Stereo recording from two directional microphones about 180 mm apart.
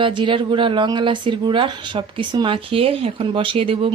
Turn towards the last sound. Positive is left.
turn(degrees=-30)  # may be behind; listen again after turning